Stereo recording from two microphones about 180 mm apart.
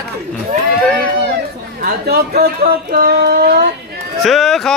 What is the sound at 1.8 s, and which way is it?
Speech, 60° right (ahead or behind).